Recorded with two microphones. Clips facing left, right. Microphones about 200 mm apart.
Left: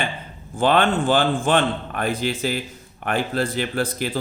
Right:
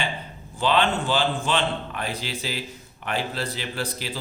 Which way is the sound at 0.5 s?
50° left (ahead or behind).